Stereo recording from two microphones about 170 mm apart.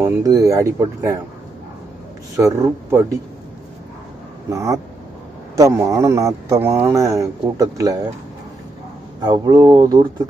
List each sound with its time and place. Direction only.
0.0 s a man's voice: 20° right (ahead or behind)
2.3 s speech: 20° right (ahead or behind)
4.5 s a man's voice: 20° right (ahead or behind)
9.2 s a man's voice: 25° right (ahead or behind)